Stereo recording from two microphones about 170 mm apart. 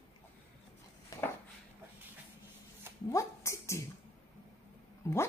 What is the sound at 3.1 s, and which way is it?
Speech, 15° left (ahead or behind).